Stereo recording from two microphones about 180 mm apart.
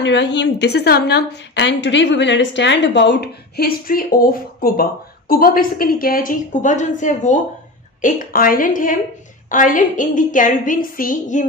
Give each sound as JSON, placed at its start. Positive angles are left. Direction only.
{"t": 0.0, "sound": "a woman's voice", "side_deg": 80}